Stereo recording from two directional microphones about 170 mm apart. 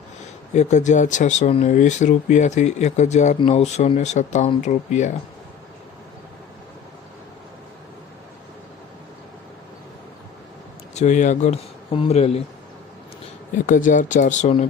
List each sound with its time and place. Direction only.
0.5 s speech: 45° left (ahead or behind)
10.9 s speech: 45° left (ahead or behind)
13.7 s speech: 50° left (ahead or behind)